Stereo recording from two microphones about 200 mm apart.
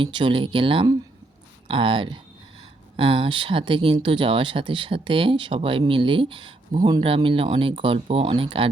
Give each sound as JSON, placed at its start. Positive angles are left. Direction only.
{"t": 0.0, "sound": "speech", "side_deg": -25}